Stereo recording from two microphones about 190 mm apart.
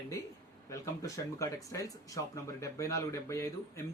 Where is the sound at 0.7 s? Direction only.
15° left (ahead or behind).